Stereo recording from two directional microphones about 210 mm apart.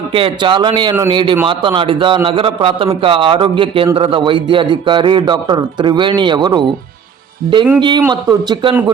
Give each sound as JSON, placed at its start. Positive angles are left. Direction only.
{"t": 0.1, "sound": "a man's voice", "side_deg": -25}
{"t": 7.8, "sound": "a man's voice", "side_deg": -20}